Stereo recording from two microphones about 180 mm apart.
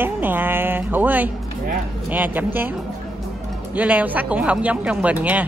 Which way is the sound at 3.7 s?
10° right (ahead or behind).